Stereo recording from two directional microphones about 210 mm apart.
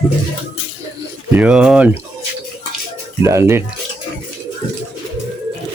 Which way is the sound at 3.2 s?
15° right (ahead or behind).